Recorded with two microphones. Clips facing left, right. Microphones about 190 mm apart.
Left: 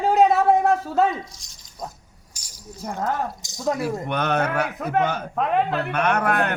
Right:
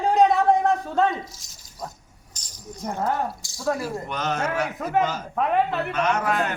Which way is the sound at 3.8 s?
60° left (ahead or behind).